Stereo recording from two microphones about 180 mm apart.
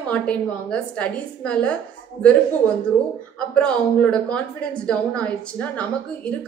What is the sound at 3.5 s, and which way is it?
A woman's voice, 5° left (ahead or behind).